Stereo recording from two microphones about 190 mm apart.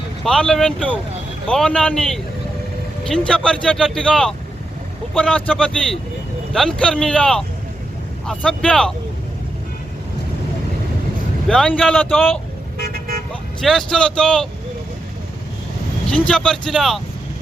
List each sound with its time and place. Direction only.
0.3 s speech: 5° left (ahead or behind)
11.4 s speech: 5° left (ahead or behind)
12.8 s vehicle: 50° right (ahead or behind)
13.6 s speech: centre (ahead or behind)
16.0 s speech: 5° left (ahead or behind)